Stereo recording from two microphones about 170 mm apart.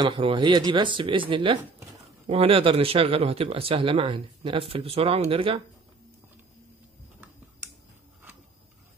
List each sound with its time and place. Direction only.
0.0 s speech: 30° right (ahead or behind)